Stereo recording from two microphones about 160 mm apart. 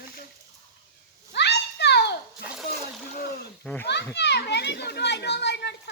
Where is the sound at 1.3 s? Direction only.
90° left.